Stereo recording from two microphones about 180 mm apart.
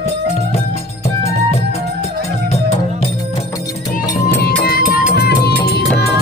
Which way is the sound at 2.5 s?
40° left (ahead or behind).